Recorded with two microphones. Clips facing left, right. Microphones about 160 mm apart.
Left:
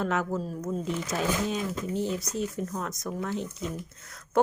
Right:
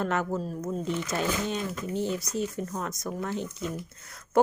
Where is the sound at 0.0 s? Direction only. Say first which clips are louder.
Even; centre (ahead or behind).